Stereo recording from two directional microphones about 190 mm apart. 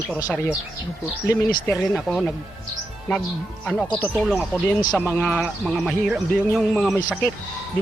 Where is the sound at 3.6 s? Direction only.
5° left (ahead or behind).